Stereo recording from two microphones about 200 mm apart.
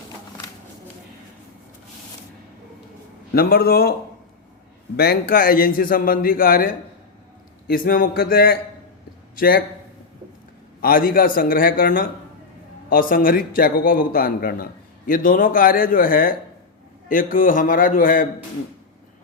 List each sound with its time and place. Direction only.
3.3 s a man's voice: 50° left (ahead or behind)
4.9 s a man's voice: 50° left (ahead or behind)
7.7 s a man's voice: 50° left (ahead or behind)
10.8 s a man's voice: 45° left (ahead or behind)